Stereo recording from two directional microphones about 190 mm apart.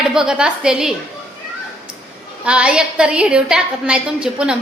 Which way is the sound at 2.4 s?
5° right (ahead or behind).